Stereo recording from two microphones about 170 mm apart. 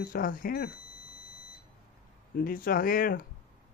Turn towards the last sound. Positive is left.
turn(degrees=55)  # may be behind; listen again after turning